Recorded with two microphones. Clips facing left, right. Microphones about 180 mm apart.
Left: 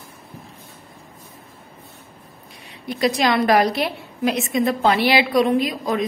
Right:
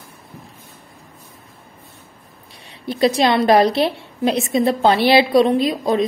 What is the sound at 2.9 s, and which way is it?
A woman's voice, 30° right (ahead or behind).